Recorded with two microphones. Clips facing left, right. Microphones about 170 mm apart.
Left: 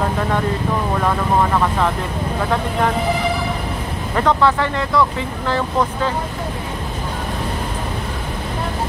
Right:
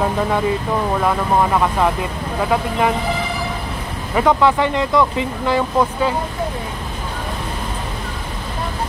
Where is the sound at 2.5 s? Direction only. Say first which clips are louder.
Right 2 dB; 10° right (ahead or behind).